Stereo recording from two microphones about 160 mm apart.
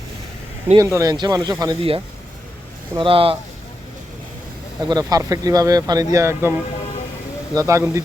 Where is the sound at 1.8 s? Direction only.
35° right (ahead or behind).